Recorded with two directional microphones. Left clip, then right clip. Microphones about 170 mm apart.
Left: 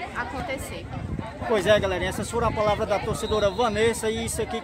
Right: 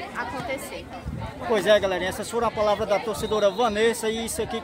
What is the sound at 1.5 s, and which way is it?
A man's voice, 5° right (ahead or behind).